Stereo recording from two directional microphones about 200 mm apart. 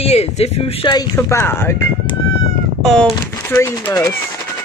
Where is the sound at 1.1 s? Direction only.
15° left (ahead or behind).